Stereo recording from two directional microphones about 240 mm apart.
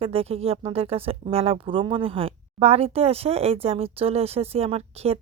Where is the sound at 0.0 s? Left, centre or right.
Right.